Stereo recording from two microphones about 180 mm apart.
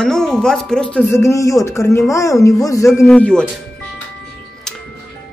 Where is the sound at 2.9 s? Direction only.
Centre (ahead or behind).